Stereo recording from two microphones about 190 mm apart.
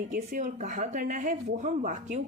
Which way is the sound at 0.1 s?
45° right (ahead or behind).